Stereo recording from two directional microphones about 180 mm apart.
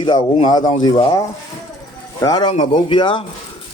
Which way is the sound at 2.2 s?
25° left (ahead or behind).